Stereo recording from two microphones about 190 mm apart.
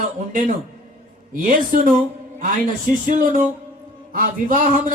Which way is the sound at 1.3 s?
45° right (ahead or behind).